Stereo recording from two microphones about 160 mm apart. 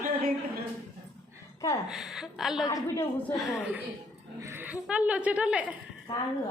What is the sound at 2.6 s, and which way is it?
Speech, 20° left (ahead or behind).